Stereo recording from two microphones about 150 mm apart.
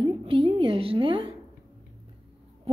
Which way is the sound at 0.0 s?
35° right (ahead or behind).